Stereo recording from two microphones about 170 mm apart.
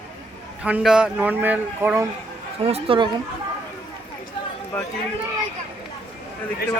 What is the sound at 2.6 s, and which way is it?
Speech, 35° right (ahead or behind).